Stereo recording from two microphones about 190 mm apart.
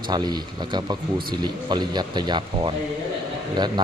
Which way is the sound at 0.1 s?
20° right (ahead or behind).